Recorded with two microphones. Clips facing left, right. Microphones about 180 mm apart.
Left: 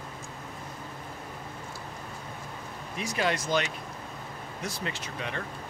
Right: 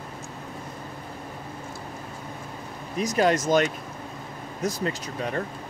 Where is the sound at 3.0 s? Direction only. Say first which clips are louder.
Right 7 dB; 40° right (ahead or behind).